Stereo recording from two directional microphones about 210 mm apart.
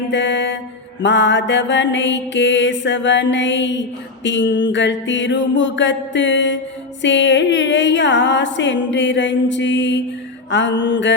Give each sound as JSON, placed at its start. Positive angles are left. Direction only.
{"t": 0.1, "sound": "mantra", "side_deg": 60}